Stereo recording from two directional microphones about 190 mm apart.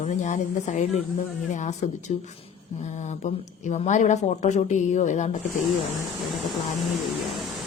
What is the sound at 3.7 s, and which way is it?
Speech, 40° left (ahead or behind).